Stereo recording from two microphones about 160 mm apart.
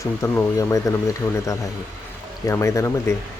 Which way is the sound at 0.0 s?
20° left (ahead or behind).